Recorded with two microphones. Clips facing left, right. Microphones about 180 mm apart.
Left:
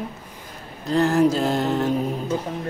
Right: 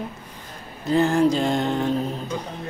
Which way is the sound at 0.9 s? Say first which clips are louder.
Even; centre (ahead or behind).